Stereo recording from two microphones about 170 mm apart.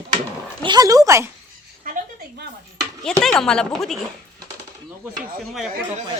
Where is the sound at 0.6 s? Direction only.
25° right (ahead or behind).